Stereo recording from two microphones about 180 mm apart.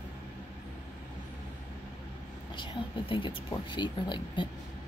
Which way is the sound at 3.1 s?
30° left (ahead or behind).